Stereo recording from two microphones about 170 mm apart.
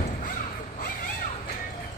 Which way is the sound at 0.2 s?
55° left (ahead or behind).